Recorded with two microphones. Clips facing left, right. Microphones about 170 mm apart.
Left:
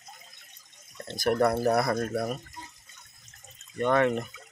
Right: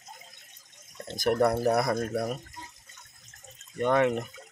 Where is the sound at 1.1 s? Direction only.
15° right (ahead or behind).